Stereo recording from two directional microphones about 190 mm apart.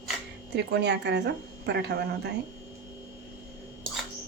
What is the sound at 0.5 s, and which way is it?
Speech, 65° right (ahead or behind).